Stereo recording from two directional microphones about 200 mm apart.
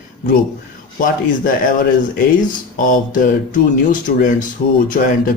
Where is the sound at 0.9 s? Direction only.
45° left (ahead or behind).